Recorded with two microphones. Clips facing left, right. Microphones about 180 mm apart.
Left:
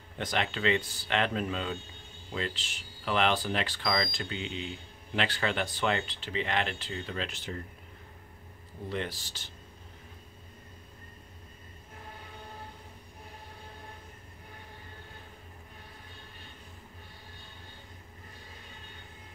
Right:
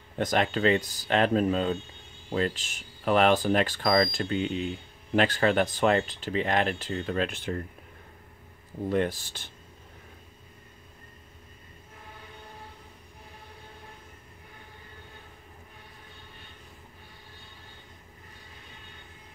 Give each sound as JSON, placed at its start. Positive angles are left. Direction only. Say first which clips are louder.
{"t": 0.2, "sound": "speech", "louder": "right 6 dB", "side_deg": -45}
{"t": 8.8, "sound": "speech", "louder": "right 9 dB", "side_deg": -50}